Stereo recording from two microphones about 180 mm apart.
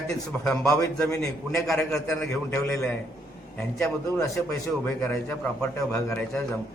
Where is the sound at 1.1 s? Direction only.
15° left (ahead or behind).